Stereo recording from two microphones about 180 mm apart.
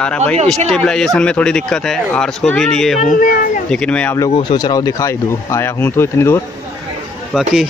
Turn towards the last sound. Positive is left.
turn(degrees=0)  # may be behind; listen again after turning